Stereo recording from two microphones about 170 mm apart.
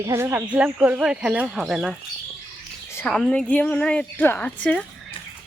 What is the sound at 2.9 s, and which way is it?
A woman's voice, 5° left (ahead or behind).